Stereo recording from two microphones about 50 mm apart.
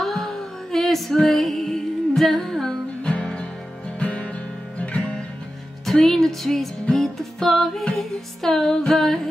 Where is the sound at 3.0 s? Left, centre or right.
Left.